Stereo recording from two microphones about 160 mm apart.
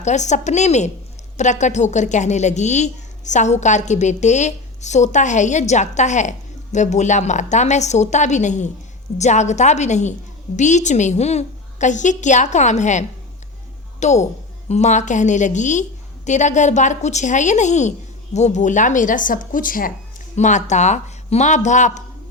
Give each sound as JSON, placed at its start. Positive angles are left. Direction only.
{"t": 0.0, "sound": "a woman's voice", "side_deg": 45}
{"t": 20.3, "sound": "a woman's voice", "side_deg": 45}